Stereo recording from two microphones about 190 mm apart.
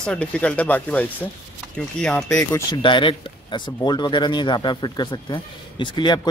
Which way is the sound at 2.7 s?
25° left (ahead or behind).